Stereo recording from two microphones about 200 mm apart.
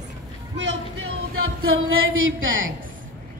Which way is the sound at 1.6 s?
90° right.